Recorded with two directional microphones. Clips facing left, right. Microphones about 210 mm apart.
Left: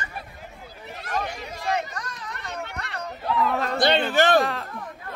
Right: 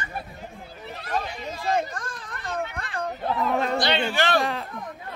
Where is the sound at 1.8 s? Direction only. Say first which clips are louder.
Right 3 dB; 50° right (ahead or behind).